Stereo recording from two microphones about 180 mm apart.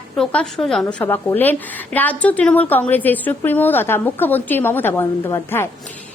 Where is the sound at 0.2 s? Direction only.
5° left (ahead or behind).